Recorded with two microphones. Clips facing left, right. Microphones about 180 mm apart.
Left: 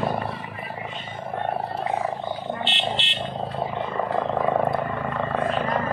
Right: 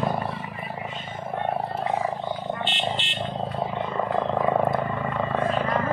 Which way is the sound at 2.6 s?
45° right (ahead or behind).